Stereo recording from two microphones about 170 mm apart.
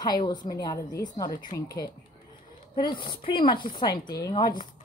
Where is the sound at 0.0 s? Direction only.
25° left (ahead or behind).